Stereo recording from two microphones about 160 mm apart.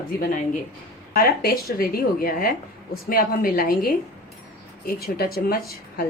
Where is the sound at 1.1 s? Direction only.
70° left (ahead or behind).